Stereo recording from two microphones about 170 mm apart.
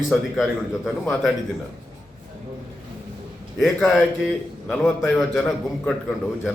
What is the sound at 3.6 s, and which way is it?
A man's voice, centre (ahead or behind).